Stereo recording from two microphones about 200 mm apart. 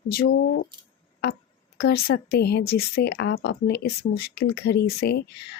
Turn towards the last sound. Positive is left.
turn(degrees=50)  # may be behind; listen again after turning